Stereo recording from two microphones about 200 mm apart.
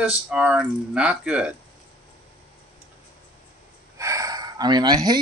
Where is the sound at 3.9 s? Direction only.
15° right (ahead or behind).